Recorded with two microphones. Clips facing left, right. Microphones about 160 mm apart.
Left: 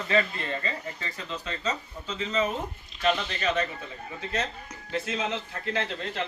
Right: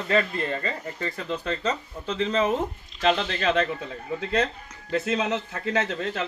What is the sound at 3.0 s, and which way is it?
Speech, 90° right.